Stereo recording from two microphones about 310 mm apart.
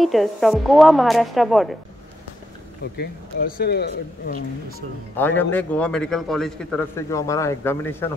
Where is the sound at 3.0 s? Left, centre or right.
Left.